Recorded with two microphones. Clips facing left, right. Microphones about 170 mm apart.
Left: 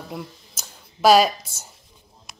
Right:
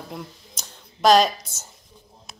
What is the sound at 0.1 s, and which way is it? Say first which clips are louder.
Speech: left 2 dB; 5° left (ahead or behind).